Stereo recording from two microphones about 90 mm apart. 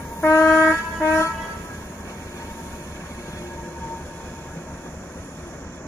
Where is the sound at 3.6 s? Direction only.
20° left (ahead or behind).